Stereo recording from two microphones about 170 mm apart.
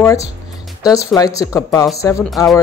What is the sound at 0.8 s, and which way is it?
Speech, 20° left (ahead or behind).